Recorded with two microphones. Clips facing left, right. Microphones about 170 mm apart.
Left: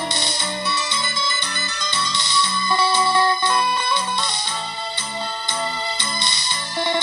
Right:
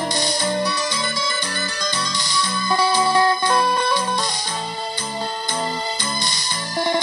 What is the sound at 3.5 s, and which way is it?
Music, 45° right (ahead or behind).